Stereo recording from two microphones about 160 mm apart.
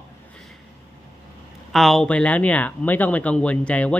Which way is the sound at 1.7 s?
Centre (ahead or behind).